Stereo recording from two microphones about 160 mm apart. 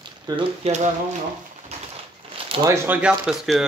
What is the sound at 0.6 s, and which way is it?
Speech, 45° right (ahead or behind).